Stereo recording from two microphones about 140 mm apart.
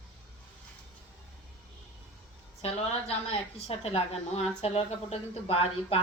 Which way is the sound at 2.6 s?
45° left (ahead or behind).